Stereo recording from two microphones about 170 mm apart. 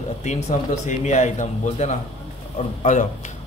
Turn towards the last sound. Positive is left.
turn(degrees=45)  # may be behind; listen again after turning